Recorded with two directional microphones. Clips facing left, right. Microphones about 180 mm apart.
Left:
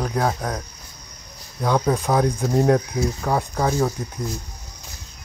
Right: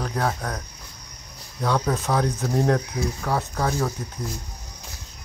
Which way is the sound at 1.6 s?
15° left (ahead or behind).